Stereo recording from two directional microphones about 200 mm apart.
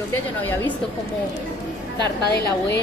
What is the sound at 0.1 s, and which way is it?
Speech, 10° left (ahead or behind).